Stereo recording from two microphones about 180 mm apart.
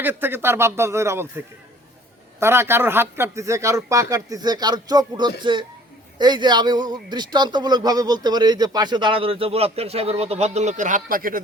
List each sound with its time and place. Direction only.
0.0 s speech: 10° right (ahead or behind)
2.4 s speech: 15° right (ahead or behind); by 11.3 s 50° right (ahead or behind)